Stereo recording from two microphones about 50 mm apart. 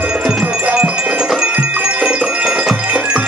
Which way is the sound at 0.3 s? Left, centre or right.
Centre.